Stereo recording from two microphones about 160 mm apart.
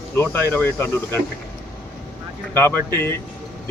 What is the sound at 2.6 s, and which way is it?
Speech, 10° left (ahead or behind).